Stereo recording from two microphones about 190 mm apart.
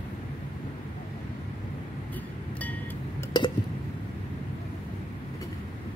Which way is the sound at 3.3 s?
20° left (ahead or behind).